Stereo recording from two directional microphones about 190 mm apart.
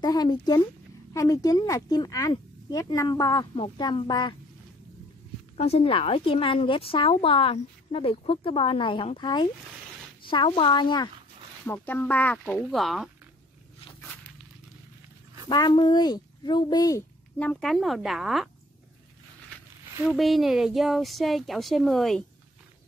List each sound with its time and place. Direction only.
0.0 s a woman's voice: 20° left (ahead or behind)
5.6 s a woman's voice: 30° left (ahead or behind)
11.6 s speech: 10° left (ahead or behind)
15.4 s a woman's voice: 25° left (ahead or behind)
17.4 s speech: 5° left (ahead or behind)
20.1 s speech: centre (ahead or behind)